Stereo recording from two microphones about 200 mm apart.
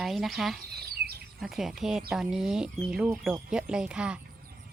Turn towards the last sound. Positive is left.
turn(degrees=-5)  # may be behind; listen again after turning